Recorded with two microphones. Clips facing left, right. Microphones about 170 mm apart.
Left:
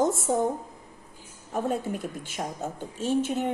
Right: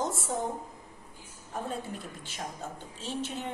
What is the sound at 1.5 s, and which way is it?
A woman's voice, 50° left (ahead or behind).